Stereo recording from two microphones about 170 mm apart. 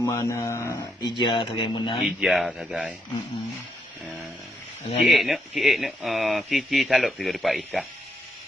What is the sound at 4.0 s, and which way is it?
Snoring, 10° right (ahead or behind).